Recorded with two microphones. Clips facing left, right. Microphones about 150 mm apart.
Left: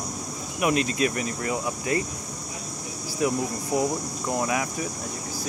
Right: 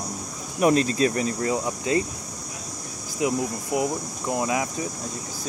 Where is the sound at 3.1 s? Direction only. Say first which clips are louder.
Right 1 dB; 15° right (ahead or behind).